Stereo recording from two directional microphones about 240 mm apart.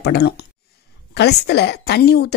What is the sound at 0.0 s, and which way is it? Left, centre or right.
A woman's voice, left.